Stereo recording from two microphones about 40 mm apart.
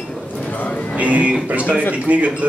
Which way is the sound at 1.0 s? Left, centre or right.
Right.